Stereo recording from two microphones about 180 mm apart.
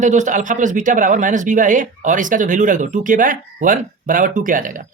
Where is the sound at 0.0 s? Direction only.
45° right (ahead or behind).